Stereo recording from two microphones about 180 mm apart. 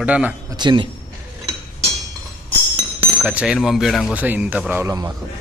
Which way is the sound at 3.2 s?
5° right (ahead or behind).